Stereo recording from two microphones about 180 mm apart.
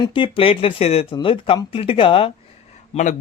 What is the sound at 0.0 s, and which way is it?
Speech, 30° left (ahead or behind).